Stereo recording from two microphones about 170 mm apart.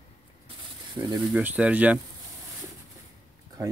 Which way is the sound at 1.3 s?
10° right (ahead or behind).